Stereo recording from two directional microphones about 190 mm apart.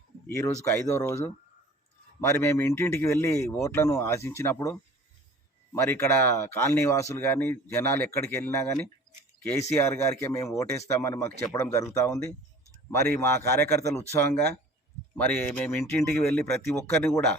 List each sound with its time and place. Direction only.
0.3 s speech: 15° left (ahead or behind)
15.1 s speech: 10° left (ahead or behind)